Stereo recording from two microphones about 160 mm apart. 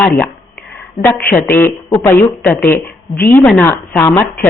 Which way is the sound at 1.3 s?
15° left (ahead or behind).